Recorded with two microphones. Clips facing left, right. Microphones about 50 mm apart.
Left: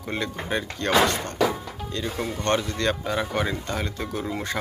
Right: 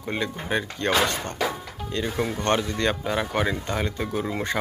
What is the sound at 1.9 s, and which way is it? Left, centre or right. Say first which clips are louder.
Speech: right 3 dB; centre.